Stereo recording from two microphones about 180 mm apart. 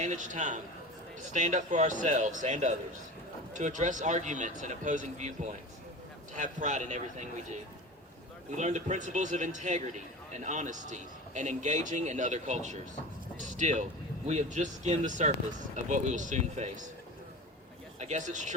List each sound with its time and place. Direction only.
0.0 s a man's voice: 45° right (ahead or behind)
8.4 s a man's voice: 40° right (ahead or behind)
18.0 s speech: 40° right (ahead or behind)